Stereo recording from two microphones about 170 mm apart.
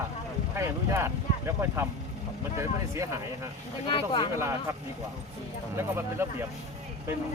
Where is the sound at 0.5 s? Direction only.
15° right (ahead or behind).